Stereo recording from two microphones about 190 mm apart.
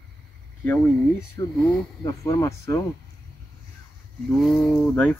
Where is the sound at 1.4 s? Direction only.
20° left (ahead or behind).